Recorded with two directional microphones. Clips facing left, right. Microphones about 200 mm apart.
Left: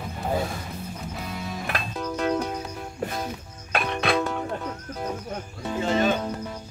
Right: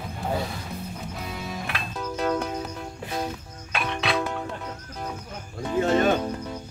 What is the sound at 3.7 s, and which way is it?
Music, 50° left (ahead or behind).